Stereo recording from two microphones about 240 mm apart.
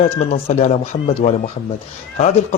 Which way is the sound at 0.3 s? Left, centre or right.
Left.